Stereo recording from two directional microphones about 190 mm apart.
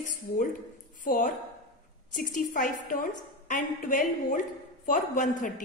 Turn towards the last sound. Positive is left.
turn(degrees=45)  # may be behind; listen again after turning